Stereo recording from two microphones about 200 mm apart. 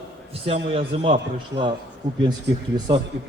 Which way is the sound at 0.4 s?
30° right (ahead or behind).